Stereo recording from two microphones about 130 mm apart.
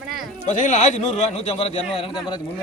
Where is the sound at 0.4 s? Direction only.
70° left (ahead or behind).